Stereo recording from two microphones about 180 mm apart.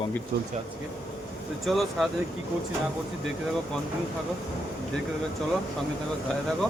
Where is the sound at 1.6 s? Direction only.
Centre (ahead or behind).